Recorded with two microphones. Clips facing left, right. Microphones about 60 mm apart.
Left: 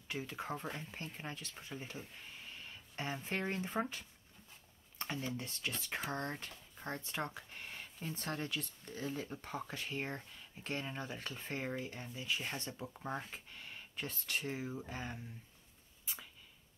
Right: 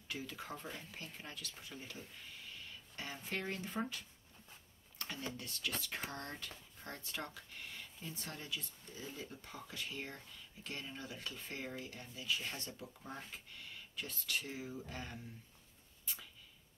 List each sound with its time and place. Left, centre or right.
0.1 s speech: left